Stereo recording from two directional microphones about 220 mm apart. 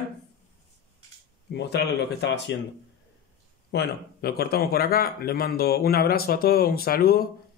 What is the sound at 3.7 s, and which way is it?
Speech, 45° left (ahead or behind).